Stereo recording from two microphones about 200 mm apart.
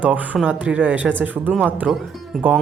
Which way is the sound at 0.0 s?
5° right (ahead or behind).